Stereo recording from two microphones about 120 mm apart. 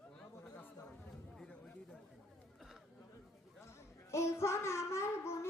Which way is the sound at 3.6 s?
25° left (ahead or behind).